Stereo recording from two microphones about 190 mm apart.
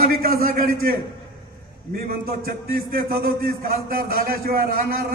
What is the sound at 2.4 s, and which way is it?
A man's voice, 50° right (ahead or behind).